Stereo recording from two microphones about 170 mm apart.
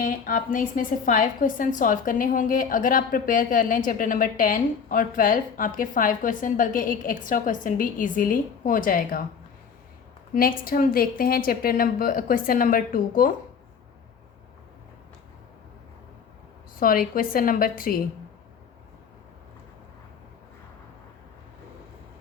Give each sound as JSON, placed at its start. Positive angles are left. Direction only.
{"t": 0.0, "sound": "a woman's voice", "side_deg": 50}
{"t": 10.3, "sound": "a woman's voice", "side_deg": 55}
{"t": 16.8, "sound": "a woman's voice", "side_deg": 55}